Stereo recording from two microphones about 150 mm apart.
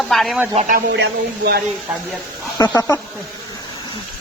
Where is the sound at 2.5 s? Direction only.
25° left (ahead or behind).